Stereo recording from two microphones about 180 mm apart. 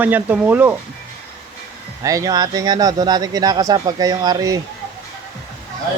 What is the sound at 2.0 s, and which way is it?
Speech, 20° right (ahead or behind).